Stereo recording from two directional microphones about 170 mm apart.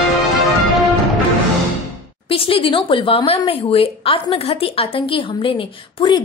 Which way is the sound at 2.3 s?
30° left (ahead or behind).